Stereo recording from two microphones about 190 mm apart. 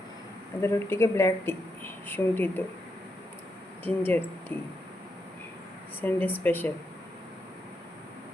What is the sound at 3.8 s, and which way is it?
Speech, 10° left (ahead or behind).